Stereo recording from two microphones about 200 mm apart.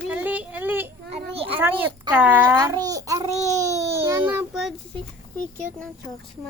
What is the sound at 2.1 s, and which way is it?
Babbling, 5° right (ahead or behind).